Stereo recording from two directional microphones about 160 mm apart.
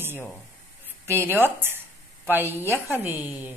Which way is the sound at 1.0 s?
15° right (ahead or behind).